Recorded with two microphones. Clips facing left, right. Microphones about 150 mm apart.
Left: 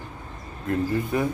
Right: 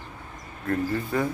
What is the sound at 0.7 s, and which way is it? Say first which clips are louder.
Speech: left 2 dB; 20° left (ahead or behind).